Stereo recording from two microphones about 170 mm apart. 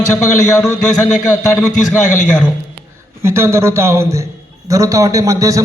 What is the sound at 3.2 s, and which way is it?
A man's voice, 15° right (ahead or behind).